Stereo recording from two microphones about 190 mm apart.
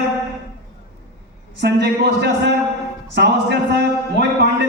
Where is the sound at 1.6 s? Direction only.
60° right (ahead or behind).